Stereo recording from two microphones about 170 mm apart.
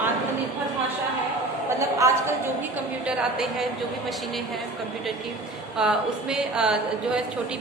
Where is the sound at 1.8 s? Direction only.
15° right (ahead or behind).